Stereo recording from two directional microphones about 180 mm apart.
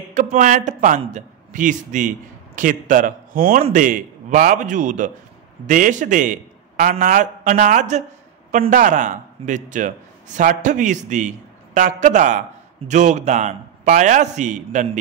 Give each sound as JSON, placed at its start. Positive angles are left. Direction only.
{"t": 0.1, "sound": "a man's voice", "side_deg": -45}